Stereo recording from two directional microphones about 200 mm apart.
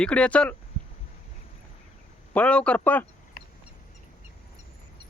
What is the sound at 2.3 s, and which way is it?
Speech, 5° left (ahead or behind).